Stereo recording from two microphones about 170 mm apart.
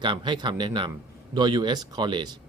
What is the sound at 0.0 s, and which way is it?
Speech, 30° right (ahead or behind).